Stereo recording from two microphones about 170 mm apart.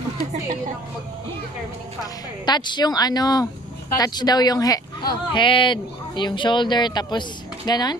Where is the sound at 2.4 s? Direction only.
25° left (ahead or behind).